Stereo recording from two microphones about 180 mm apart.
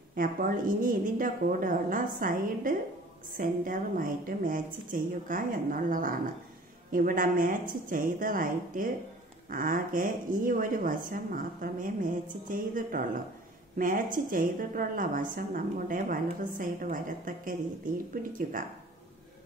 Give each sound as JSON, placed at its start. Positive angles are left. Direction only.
{"t": 0.1, "sound": "speech", "side_deg": -50}